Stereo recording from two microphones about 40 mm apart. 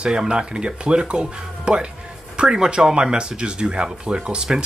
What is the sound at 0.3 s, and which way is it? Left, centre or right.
Speech, right.